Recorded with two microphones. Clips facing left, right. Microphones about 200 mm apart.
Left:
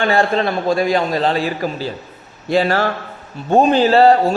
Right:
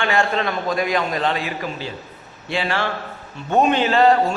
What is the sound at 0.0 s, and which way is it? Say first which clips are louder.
A man's voice: left 5 dB; 35° left (ahead or behind).